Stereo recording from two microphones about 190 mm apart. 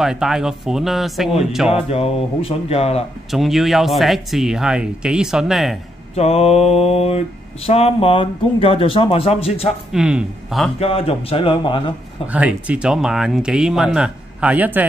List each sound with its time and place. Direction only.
0.0 s speech: centre (ahead or behind)
1.9 s speech: 30° left (ahead or behind)
3.3 s speech: centre (ahead or behind)
6.1 s speech: 35° left (ahead or behind)
9.9 s speech: 5° right (ahead or behind)
10.8 s speech: 30° left (ahead or behind)
12.3 s speech: 5° right (ahead or behind)